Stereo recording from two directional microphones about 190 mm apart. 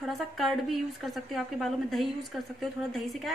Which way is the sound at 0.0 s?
Centre (ahead or behind).